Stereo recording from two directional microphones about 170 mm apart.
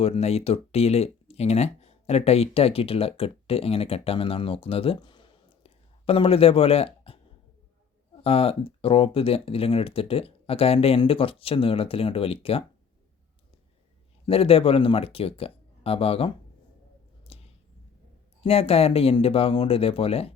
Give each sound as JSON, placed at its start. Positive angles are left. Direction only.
{"t": 0.0, "sound": "speech", "side_deg": 35}
{"t": 8.2, "sound": "speech", "side_deg": 35}
{"t": 14.3, "sound": "speech", "side_deg": 35}
{"t": 17.3, "sound": "a sound", "side_deg": 35}
{"t": 18.4, "sound": "speech", "side_deg": 35}